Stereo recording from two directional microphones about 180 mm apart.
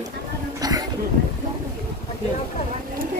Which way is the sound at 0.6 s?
20° right (ahead or behind).